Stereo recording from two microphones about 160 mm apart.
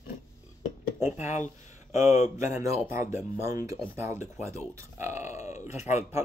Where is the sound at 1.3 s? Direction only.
50° left (ahead or behind).